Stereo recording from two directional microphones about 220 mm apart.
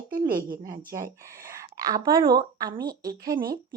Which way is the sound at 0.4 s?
20° right (ahead or behind).